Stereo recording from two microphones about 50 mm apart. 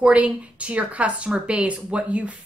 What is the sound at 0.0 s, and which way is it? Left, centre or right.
A woman's voice, right.